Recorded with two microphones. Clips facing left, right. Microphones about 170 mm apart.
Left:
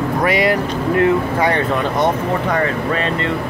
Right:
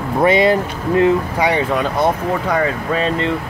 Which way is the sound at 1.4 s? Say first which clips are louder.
Even; 10° right (ahead or behind).